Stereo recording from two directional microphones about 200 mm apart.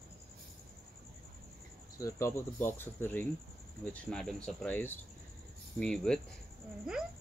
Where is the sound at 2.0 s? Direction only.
15° left (ahead or behind).